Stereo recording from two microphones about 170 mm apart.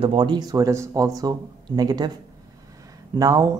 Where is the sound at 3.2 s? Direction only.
20° right (ahead or behind).